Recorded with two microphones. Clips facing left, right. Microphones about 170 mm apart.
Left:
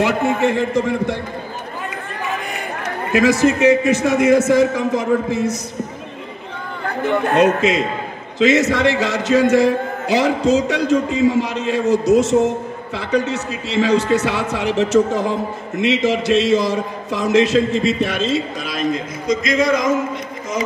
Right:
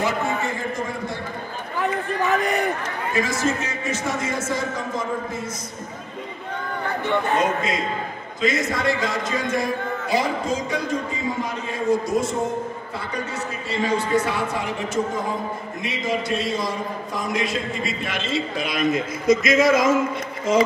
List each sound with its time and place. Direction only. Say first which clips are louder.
0.0 s a man's voice: left 7 dB; 80° left
2.3 s a man's voice: right 5 dB; 65° right (ahead or behind)
2.8 s a man's voice: left 8 dB; 75° left (ahead or behind)
7.2 s a man's voice: left 7 dB; 75° left (ahead or behind); by 18.1 s 90° left
18.9 s a man's voice: right 1 dB; 25° right (ahead or behind)